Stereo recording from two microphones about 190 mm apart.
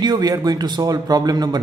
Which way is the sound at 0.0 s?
20° right (ahead or behind).